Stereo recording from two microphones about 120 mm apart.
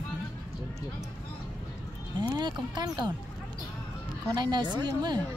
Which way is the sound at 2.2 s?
35° right (ahead or behind).